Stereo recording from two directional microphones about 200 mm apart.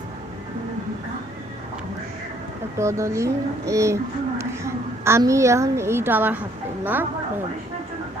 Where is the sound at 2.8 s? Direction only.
15° right (ahead or behind).